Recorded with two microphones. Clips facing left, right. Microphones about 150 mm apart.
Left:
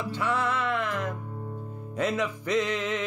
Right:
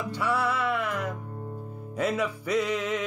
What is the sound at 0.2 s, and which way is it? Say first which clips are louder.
Music: right 1 dB; 10° right (ahead or behind).